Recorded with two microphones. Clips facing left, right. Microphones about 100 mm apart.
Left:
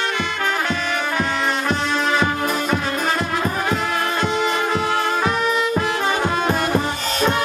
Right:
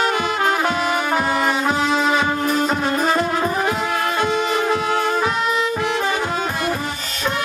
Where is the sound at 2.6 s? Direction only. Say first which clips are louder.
Right 2 dB; 35° right (ahead or behind).